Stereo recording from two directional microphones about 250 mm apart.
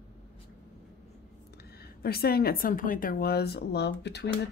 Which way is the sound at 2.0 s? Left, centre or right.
Left.